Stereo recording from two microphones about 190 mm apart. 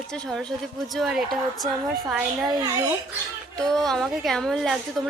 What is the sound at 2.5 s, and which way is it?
Speech, 20° right (ahead or behind).